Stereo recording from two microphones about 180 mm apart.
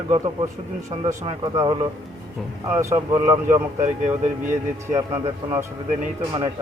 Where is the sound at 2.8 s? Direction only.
15° right (ahead or behind).